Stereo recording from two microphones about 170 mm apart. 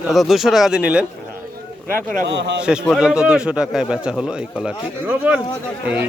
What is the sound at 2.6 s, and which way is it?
A man's voice, 5° right (ahead or behind).